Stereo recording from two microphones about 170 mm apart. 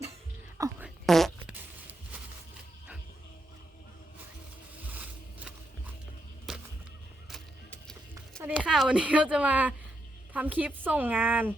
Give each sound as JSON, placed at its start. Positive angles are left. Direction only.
{"t": 0.6, "sound": "fart", "side_deg": -20}
{"t": 1.0, "sound": "fart", "side_deg": 0}
{"t": 4.9, "sound": "a sound", "side_deg": -10}
{"t": 6.5, "sound": "whip", "side_deg": 0}
{"t": 7.7, "sound": "music", "side_deg": 5}
{"t": 8.4, "sound": "a woman's voice", "side_deg": -5}